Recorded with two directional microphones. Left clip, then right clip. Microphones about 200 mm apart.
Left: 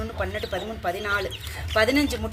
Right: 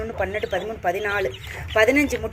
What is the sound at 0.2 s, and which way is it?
Speech, 5° right (ahead or behind).